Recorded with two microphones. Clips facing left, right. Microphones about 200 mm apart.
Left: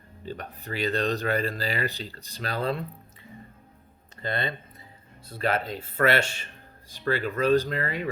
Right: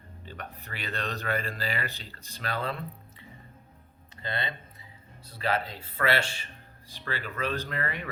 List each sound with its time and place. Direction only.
0.3 s speech: 35° left (ahead or behind)
4.2 s speech: 50° left (ahead or behind); by 8.0 s 35° left (ahead or behind)